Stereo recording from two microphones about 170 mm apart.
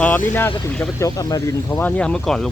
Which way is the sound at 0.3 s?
10° left (ahead or behind).